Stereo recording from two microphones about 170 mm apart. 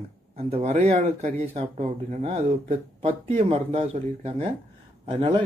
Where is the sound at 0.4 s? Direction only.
35° right (ahead or behind).